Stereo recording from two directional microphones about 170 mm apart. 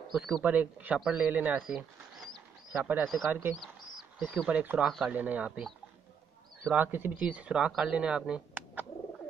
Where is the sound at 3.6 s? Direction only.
Centre (ahead or behind).